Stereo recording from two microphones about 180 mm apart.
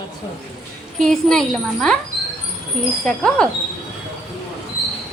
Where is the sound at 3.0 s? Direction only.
5° left (ahead or behind).